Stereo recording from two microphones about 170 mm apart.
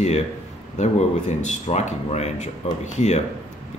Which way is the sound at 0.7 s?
40° left (ahead or behind).